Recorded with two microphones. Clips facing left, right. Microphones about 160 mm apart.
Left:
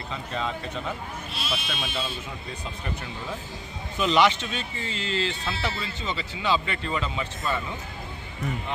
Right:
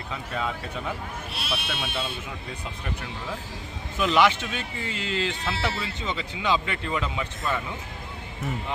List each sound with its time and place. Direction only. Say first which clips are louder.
0.1 s speech: even; 5° right (ahead or behind)
1.3 s speech: even; 60° right (ahead or behind)
3.9 s speech: even; 5° right (ahead or behind)
5.3 s speech: right 2 dB; 75° right (ahead or behind)
6.0 s speech: right 1 dB; 20° right (ahead or behind)